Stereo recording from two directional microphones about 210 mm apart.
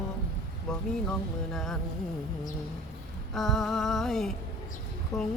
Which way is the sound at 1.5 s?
Centre (ahead or behind).